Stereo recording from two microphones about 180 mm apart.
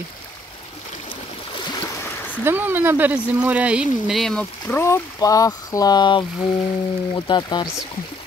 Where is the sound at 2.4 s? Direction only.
10° right (ahead or behind); by 7.6 s 25° left (ahead or behind).